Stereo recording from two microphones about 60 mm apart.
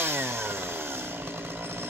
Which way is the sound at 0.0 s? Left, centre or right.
Right.